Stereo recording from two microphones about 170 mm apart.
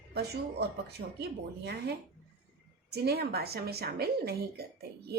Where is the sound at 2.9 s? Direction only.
70° right (ahead or behind).